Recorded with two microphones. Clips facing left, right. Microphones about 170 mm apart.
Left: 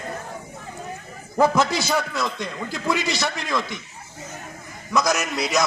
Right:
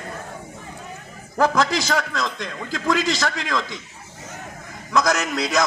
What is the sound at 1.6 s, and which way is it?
Speech, 90° right.